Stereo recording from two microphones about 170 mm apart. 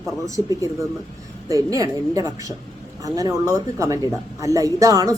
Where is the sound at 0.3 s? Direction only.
20° right (ahead or behind).